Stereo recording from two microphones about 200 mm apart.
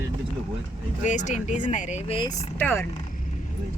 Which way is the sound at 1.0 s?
40° left (ahead or behind).